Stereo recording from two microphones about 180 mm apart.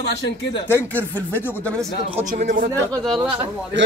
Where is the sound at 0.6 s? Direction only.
10° left (ahead or behind).